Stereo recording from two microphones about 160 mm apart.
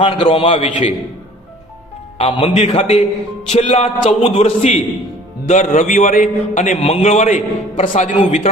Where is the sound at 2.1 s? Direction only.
40° left (ahead or behind).